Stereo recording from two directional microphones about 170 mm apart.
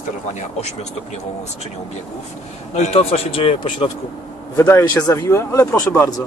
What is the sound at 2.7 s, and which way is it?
Speech, 40° left (ahead or behind).